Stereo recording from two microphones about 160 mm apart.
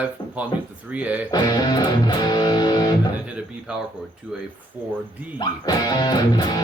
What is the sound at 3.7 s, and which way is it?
Speech, 10° right (ahead or behind).